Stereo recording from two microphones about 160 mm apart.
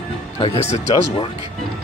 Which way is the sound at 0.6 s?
40° left (ahead or behind).